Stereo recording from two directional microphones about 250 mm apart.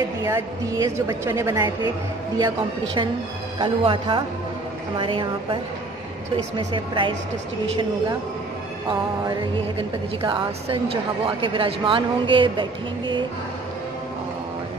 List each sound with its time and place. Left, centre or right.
0.2 s a woman's voice: centre
9.8 s speech: right